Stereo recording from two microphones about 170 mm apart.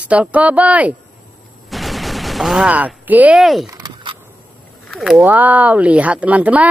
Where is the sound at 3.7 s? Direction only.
20° right (ahead or behind).